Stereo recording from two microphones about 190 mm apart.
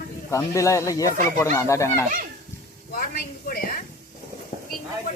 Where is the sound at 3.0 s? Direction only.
50° left (ahead or behind).